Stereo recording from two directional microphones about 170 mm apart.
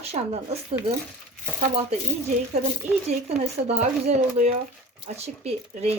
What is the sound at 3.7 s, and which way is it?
Speech, 40° right (ahead or behind).